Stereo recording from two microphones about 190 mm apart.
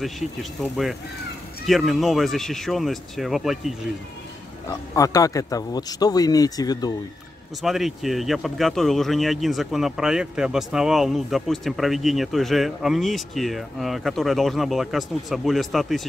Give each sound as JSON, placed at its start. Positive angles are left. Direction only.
{"t": 0.0, "sound": "speech", "side_deg": 0}
{"t": 4.6, "sound": "speech", "side_deg": 15}
{"t": 7.6, "sound": "speech", "side_deg": 0}